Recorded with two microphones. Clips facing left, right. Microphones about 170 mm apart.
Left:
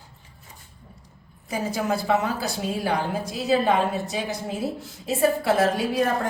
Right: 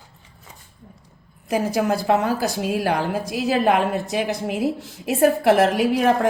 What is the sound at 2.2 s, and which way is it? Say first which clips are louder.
A woman's voice: right 5 dB; 85° right.